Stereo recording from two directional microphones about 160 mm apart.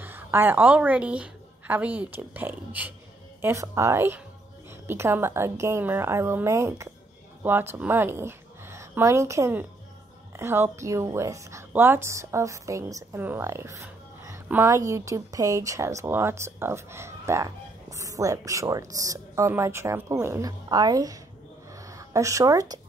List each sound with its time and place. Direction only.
0.0 s a woman's voice: 15° right (ahead or behind)